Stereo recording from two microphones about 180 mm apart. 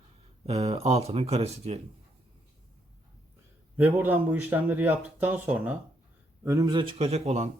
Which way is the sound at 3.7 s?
10° right (ahead or behind).